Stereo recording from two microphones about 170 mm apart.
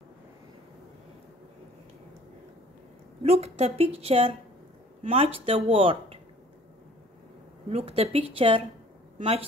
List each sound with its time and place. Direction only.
3.2 s a woman's voice: 35° right (ahead or behind)
7.7 s a woman's voice: 35° right (ahead or behind)